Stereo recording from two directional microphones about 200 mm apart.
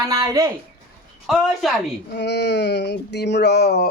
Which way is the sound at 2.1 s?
55° left (ahead or behind).